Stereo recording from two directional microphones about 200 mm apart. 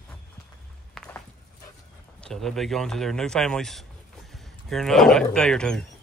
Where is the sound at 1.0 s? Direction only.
Centre (ahead or behind).